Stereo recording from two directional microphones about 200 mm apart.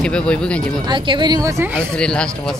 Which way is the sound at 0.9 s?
20° right (ahead or behind).